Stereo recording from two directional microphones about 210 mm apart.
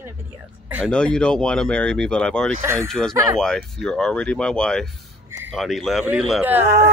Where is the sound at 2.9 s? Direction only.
Centre (ahead or behind).